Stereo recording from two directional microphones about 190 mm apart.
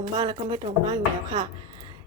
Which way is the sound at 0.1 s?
20° right (ahead or behind).